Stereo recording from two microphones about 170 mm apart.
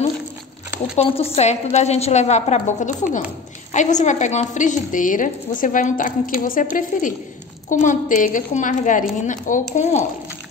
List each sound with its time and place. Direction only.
0.9 s a woman's voice: 35° left (ahead or behind)